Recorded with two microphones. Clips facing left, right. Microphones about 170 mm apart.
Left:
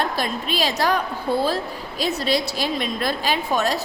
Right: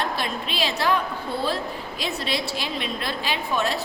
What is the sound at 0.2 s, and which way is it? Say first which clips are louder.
A woman's voice: left 3 dB; 40° left (ahead or behind).